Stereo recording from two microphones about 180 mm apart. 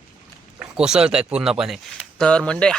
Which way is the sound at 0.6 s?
5° right (ahead or behind).